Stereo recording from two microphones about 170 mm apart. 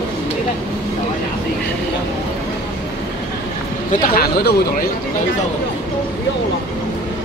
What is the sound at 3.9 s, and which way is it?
Speech, 60° left (ahead or behind).